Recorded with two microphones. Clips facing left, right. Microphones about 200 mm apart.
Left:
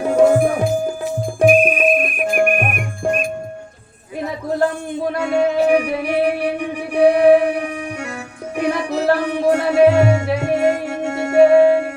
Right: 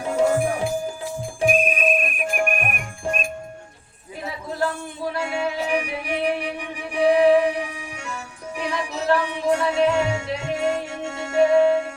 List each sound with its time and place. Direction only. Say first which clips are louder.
0.0 s music: left 7 dB; 60° left (ahead or behind)
1.4 s music: left 7 dB; 60° left (ahead or behind)
5.1 s music: left 9 dB; 55° left (ahead or behind)